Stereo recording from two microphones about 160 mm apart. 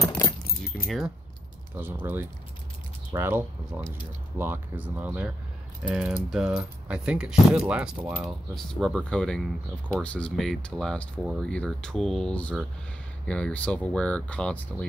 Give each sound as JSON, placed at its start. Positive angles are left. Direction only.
{"t": 0.0, "sound": "keys jangling", "side_deg": 20}
{"t": 0.8, "sound": "speech", "side_deg": 0}
{"t": 1.8, "sound": "speech", "side_deg": -10}